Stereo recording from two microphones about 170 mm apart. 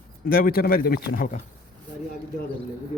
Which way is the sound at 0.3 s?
55° left (ahead or behind).